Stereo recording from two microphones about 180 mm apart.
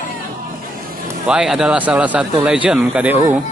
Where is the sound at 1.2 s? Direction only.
5° right (ahead or behind).